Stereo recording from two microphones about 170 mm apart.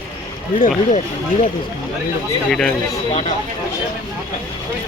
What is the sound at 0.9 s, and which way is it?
Speech, 45° left (ahead or behind).